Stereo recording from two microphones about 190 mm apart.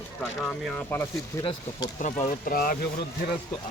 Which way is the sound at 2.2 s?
45° left (ahead or behind).